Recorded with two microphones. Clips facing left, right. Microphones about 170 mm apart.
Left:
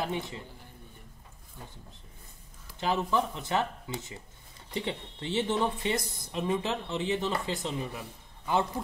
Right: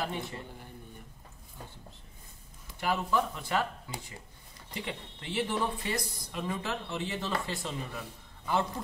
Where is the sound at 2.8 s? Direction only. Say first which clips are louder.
Left 1 dB; 20° left (ahead or behind).